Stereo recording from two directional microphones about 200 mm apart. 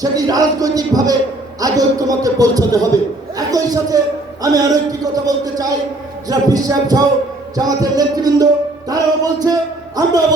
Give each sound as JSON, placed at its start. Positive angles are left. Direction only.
{"t": 0.0, "sound": "a man's voice", "side_deg": -20}
{"t": 3.3, "sound": "a sound", "side_deg": -20}
{"t": 4.4, "sound": "a man's voice", "side_deg": -20}